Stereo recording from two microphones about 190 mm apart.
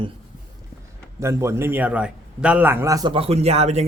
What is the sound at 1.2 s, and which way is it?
A man's voice, 15° right (ahead or behind).